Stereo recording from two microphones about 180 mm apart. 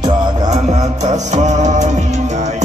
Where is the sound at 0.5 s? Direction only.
40° right (ahead or behind).